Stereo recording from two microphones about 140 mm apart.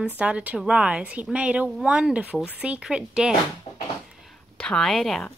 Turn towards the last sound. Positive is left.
turn(degrees=5)  # may be behind; listen again after turning